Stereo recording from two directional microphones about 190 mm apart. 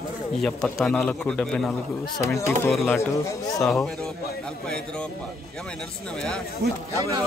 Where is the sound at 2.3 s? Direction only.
15° left (ahead or behind).